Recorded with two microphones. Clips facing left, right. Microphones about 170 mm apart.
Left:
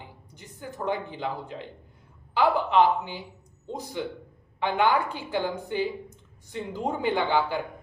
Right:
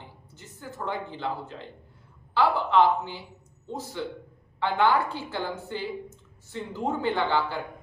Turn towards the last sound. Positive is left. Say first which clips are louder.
# left 2 dB
turn(degrees=15)  # may be behind; listen again after turning